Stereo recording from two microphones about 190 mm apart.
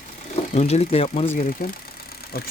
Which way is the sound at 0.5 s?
35° left (ahead or behind).